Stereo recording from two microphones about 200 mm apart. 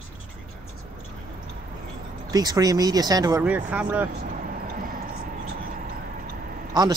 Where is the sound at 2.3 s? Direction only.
20° right (ahead or behind).